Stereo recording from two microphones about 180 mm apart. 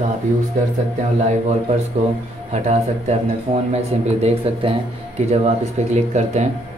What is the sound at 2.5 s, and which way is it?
Speech, 40° right (ahead or behind).